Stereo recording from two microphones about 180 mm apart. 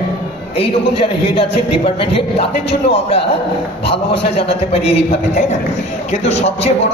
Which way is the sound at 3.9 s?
30° left (ahead or behind).